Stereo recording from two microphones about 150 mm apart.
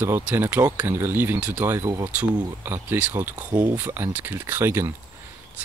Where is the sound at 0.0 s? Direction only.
15° right (ahead or behind).